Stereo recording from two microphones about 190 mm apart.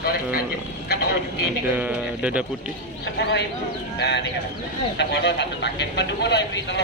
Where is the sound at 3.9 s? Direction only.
65° left (ahead or behind).